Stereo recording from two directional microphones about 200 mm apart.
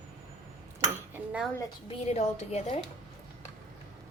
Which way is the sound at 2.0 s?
35° left (ahead or behind).